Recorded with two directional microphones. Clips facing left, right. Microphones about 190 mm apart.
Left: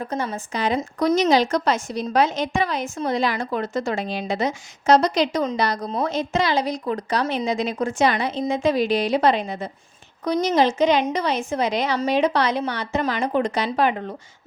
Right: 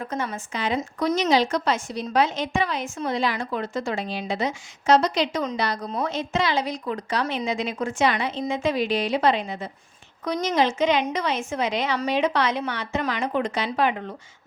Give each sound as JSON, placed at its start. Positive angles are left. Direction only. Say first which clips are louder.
{"t": 0.1, "sound": "a woman's voice", "louder": "left 3 dB", "side_deg": 35}